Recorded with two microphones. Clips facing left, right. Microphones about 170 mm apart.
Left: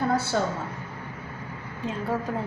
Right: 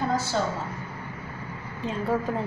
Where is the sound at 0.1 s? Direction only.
60° left (ahead or behind).